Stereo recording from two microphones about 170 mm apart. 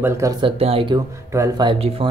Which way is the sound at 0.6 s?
35° right (ahead or behind).